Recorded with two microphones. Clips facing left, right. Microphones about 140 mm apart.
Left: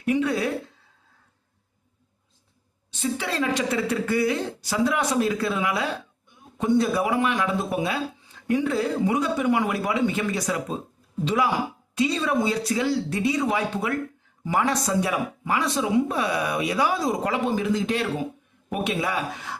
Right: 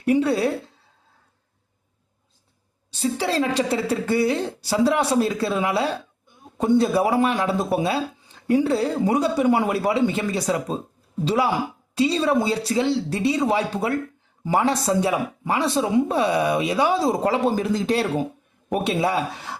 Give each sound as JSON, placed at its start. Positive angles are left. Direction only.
{"t": 0.0, "sound": "a woman's voice", "side_deg": -35}
{"t": 2.9, "sound": "a woman's voice", "side_deg": -35}